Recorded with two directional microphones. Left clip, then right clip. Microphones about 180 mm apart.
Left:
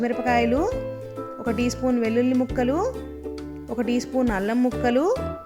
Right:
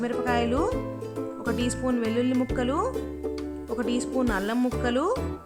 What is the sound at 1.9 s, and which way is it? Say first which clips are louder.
Speech: left 4 dB; 5° left (ahead or behind).